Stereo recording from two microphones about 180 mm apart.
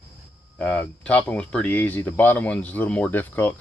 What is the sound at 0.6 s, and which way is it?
Speech, 10° left (ahead or behind).